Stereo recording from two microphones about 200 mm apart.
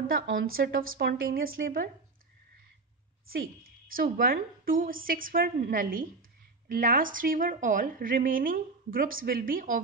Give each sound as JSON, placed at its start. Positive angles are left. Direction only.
{"t": 0.5, "sound": "a woman's voice", "side_deg": -45}
{"t": 3.3, "sound": "a woman's voice", "side_deg": -45}